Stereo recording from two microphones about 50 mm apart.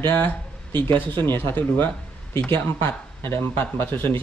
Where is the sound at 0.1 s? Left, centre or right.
Left.